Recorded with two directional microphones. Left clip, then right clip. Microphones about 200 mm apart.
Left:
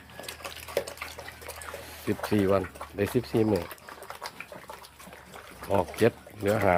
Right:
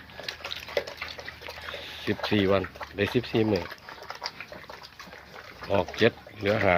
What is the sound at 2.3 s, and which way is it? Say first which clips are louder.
Speech: right 1 dB; 5° right (ahead or behind).